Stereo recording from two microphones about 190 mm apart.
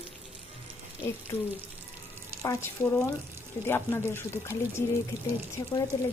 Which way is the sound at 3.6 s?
10° left (ahead or behind).